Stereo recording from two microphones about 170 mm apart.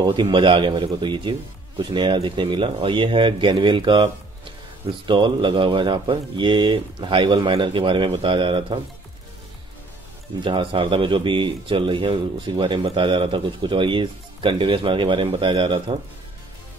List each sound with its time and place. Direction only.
0.0 s speech: 25° right (ahead or behind)
10.4 s speech: 30° right (ahead or behind)